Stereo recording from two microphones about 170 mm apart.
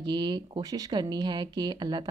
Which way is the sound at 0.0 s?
25° right (ahead or behind).